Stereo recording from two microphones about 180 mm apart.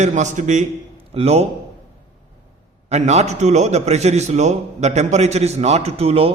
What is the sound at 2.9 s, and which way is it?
A man's voice, 40° right (ahead or behind).